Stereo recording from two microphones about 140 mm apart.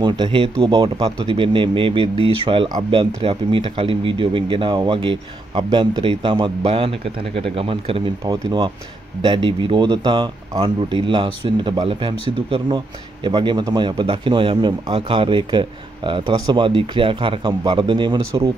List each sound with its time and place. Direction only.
0.0 s speech: 35° right (ahead or behind)
8.3 s speech: 25° right (ahead or behind)